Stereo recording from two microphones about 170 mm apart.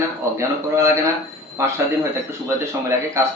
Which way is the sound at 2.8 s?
15° right (ahead or behind).